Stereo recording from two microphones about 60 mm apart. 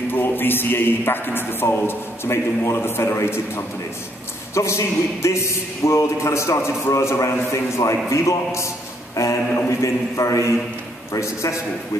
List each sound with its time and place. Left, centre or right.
0.1 s a man's voice: left
9.1 s mantra: left
9.7 s a man's voice: left